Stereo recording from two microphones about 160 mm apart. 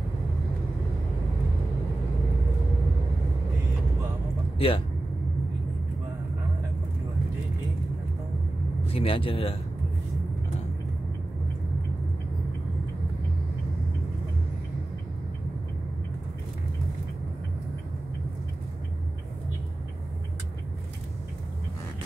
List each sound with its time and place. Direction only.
4.6 s speech: 35° left (ahead or behind)
8.8 s speech: 35° left (ahead or behind)